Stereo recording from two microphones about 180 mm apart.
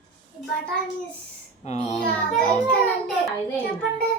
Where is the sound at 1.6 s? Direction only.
40° left (ahead or behind).